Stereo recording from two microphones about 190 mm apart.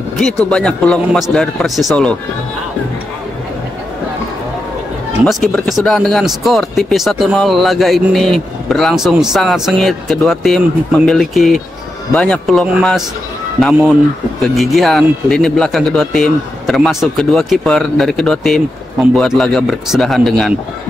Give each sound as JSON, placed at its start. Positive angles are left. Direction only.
{"t": 0.5, "sound": "speech", "side_deg": 5}
{"t": 5.2, "sound": "speech", "side_deg": 0}